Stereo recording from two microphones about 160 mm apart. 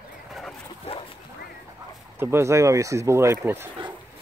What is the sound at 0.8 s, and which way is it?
Dog, 35° left (ahead or behind).